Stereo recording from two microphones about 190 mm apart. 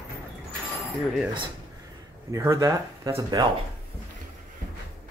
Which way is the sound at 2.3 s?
15° right (ahead or behind).